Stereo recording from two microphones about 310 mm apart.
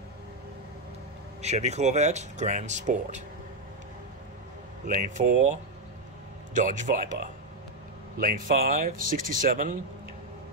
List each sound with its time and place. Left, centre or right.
1.4 s speech: right
5.1 s speech: right